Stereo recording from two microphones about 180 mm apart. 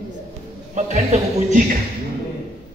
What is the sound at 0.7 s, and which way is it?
Speech, 40° right (ahead or behind).